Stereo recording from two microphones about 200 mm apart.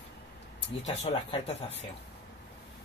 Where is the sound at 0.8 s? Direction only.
35° left (ahead or behind).